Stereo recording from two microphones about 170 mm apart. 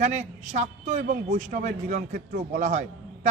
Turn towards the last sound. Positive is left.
turn(degrees=-45)  # may be behind; listen again after turning